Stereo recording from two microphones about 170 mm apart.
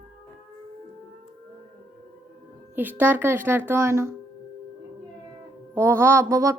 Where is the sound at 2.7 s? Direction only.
10° right (ahead or behind).